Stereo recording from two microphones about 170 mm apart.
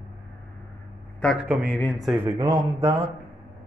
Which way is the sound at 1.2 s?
10° left (ahead or behind).